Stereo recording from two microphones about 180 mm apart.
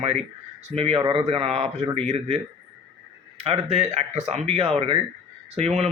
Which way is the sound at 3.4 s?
35° right (ahead or behind).